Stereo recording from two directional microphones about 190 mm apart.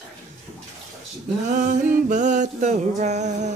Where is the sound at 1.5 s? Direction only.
45° right (ahead or behind).